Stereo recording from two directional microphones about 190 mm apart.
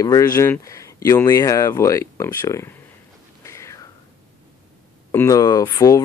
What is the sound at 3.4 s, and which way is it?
Whispering, 15° left (ahead or behind).